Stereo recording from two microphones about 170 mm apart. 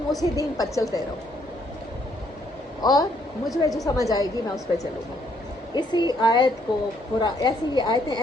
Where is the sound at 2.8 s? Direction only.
25° left (ahead or behind).